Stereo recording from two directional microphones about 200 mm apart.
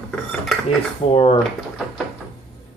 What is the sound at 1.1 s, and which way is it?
Speech, 25° left (ahead or behind).